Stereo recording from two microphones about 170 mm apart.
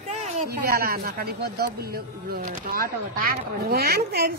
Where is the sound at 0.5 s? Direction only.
65° right (ahead or behind).